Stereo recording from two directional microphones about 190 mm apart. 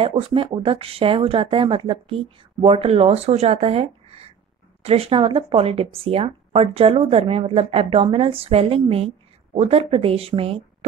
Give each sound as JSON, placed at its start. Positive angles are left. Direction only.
{"t": 0.0, "sound": "speech", "side_deg": -25}